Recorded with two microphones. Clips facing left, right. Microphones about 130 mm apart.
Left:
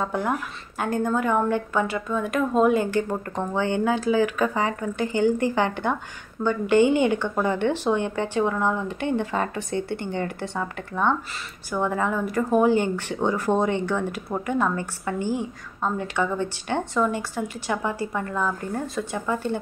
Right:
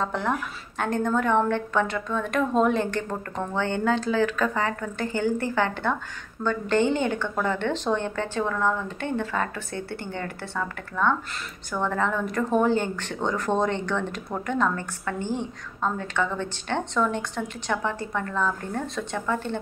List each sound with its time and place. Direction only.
0.0 s speech: 10° left (ahead or behind)